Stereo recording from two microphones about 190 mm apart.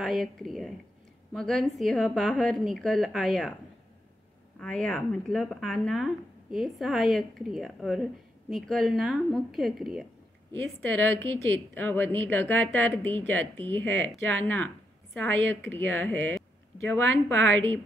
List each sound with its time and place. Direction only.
0.0 s speech: centre (ahead or behind)
4.6 s speech: 5° left (ahead or behind)
10.5 s a woman's voice: 15° left (ahead or behind)
16.3 s a sound: 10° left (ahead or behind)
17.0 s speech: 90° right